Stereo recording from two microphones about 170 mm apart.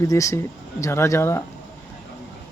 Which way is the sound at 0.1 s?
20° left (ahead or behind).